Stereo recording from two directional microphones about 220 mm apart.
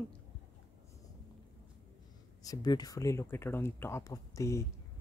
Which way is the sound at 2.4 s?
15° left (ahead or behind).